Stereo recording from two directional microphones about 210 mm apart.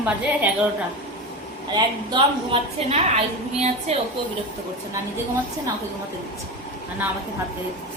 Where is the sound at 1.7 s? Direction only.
20° right (ahead or behind).